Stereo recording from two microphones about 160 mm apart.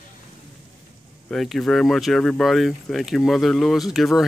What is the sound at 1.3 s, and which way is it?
Speech, centre (ahead or behind).